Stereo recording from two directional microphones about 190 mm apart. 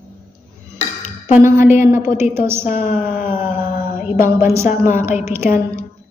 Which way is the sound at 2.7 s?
40° left (ahead or behind).